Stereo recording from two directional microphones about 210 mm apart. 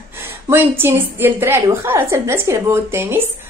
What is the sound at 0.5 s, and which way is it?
A woman's voice, 10° right (ahead or behind).